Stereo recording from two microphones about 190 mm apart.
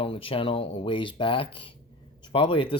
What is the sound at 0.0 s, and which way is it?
Speech, 30° left (ahead or behind).